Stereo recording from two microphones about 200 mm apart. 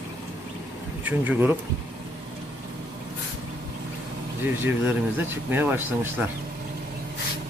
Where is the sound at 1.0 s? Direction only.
10° right (ahead or behind).